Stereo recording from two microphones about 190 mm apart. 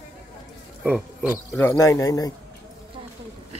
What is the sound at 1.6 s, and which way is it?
Speech, 15° left (ahead or behind).